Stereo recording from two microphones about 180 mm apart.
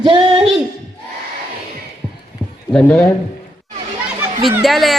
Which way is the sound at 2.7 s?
5° left (ahead or behind).